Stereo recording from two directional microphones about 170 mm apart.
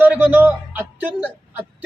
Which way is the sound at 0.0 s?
10° right (ahead or behind).